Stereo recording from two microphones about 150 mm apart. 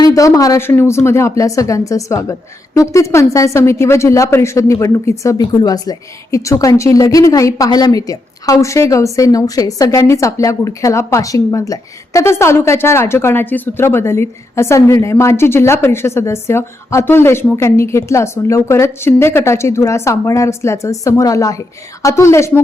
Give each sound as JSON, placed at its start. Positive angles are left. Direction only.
{"t": 0.0, "sound": "speech", "side_deg": 20}